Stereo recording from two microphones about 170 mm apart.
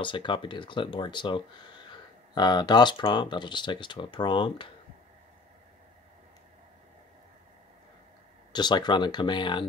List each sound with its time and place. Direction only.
0.0 s speech: 30° left (ahead or behind)
8.5 s speech: 25° left (ahead or behind)